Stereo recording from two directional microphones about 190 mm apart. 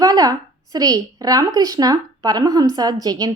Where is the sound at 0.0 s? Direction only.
20° right (ahead or behind).